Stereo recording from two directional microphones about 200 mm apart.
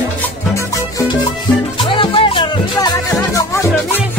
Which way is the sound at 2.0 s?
25° left (ahead or behind).